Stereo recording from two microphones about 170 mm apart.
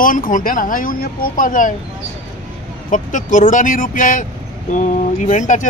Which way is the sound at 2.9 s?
50° left (ahead or behind).